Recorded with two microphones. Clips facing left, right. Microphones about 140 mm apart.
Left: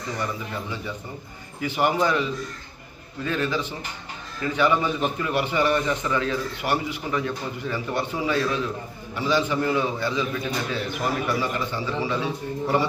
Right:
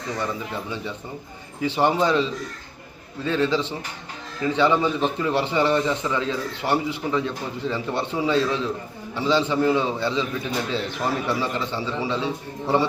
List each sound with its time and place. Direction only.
1.6 s a man's voice: 25° right (ahead or behind)